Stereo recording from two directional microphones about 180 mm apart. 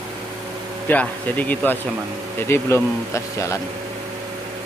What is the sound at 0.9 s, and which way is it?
Speech, 10° left (ahead or behind).